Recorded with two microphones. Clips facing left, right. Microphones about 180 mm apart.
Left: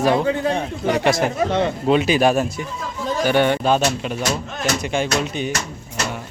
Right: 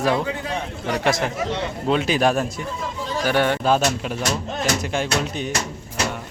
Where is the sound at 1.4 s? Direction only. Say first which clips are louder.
Left 6 dB; 55° left (ahead or behind).